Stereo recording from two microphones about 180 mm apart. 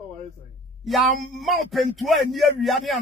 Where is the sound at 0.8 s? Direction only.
Centre (ahead or behind).